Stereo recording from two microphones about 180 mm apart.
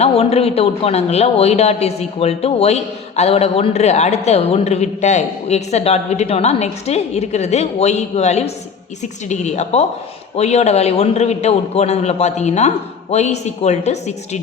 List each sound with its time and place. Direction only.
0.0 s speech: 35° left (ahead or behind)